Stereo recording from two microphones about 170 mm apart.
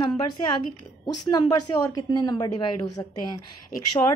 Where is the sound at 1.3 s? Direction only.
25° left (ahead or behind).